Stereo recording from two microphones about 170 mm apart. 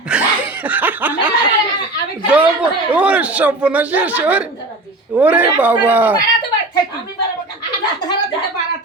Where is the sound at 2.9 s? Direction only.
5° right (ahead or behind).